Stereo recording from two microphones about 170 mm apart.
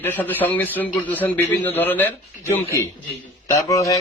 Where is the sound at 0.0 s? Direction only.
10° left (ahead or behind).